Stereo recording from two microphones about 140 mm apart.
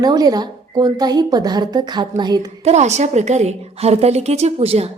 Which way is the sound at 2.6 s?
55° right (ahead or behind).